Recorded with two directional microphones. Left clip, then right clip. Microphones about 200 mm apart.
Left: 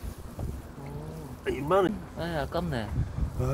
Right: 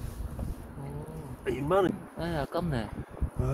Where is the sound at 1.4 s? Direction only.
Centre (ahead or behind).